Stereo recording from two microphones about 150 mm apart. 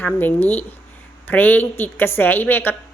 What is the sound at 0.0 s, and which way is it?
Speech, 10° left (ahead or behind).